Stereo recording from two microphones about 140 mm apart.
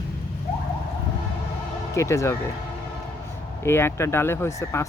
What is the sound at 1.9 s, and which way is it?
Speech, 20° left (ahead or behind).